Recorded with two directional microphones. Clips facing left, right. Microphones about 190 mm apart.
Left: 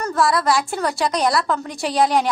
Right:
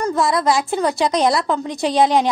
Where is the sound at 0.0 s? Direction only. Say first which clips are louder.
Right 1 dB; 20° right (ahead or behind).